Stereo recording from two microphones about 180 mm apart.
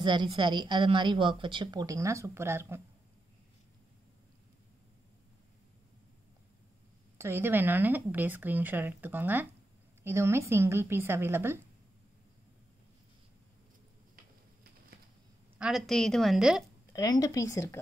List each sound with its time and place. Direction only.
0.0 s a woman's voice: 25° right (ahead or behind)
7.2 s speech: 10° right (ahead or behind)
14.1 s a sound: 55° right (ahead or behind)
15.5 s a woman's voice: 5° right (ahead or behind)
16.9 s speech: 20° left (ahead or behind)